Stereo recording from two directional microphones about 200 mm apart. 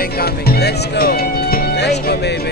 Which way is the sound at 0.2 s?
50° left (ahead or behind).